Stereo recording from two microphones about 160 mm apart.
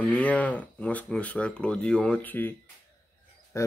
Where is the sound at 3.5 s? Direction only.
20° left (ahead or behind).